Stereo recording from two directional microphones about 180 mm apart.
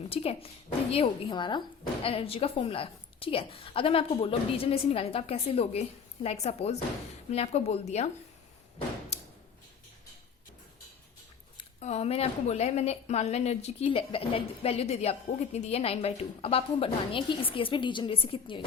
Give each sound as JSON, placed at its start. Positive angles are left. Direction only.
{"t": 0.1, "sound": "a woman's voice", "side_deg": 35}
{"t": 9.1, "sound": "a sound", "side_deg": 35}
{"t": 11.8, "sound": "a woman's voice", "side_deg": 35}